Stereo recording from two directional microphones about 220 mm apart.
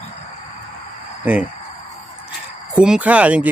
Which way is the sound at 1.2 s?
5° right (ahead or behind).